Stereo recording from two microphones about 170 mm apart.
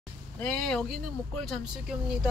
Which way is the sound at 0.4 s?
5° left (ahead or behind).